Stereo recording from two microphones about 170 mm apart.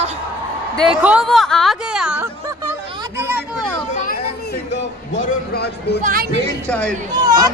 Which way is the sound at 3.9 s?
55° left (ahead or behind).